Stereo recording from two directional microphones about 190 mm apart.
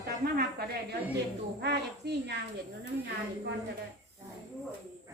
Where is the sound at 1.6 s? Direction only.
60° right (ahead or behind).